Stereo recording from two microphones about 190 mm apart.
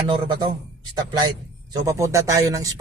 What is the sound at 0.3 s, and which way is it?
A man's voice, 25° right (ahead or behind).